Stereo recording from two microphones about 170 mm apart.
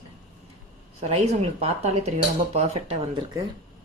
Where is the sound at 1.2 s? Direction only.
40° right (ahead or behind).